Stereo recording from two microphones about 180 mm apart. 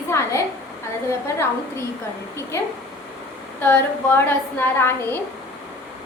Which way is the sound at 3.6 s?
10° left (ahead or behind).